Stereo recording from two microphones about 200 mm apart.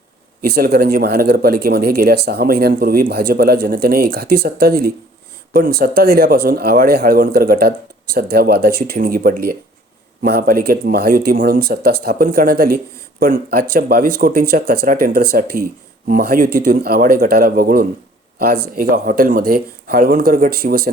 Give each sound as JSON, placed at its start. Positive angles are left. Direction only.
{"t": 0.4, "sound": "speech", "side_deg": -50}